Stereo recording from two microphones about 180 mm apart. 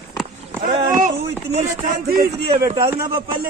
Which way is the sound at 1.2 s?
60° right (ahead or behind).